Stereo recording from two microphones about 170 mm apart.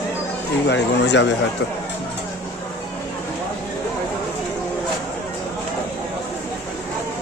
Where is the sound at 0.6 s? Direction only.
90° left.